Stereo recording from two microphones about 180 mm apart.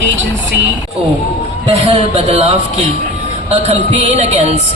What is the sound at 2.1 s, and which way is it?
Speech, 40° right (ahead or behind).